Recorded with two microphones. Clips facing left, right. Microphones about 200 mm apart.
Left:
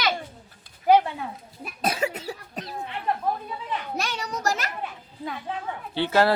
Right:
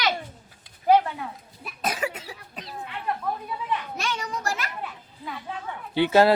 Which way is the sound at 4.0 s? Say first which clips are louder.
Even; 35° left (ahead or behind).